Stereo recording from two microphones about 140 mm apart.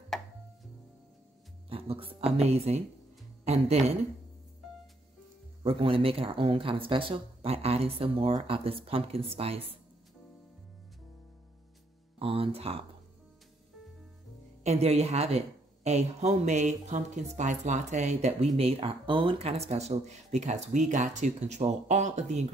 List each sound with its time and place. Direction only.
1.7 s speech: 40° right (ahead or behind)
5.6 s speech: 40° right (ahead or behind)
12.2 s speech: 45° right (ahead or behind)
14.6 s speech: 50° right (ahead or behind)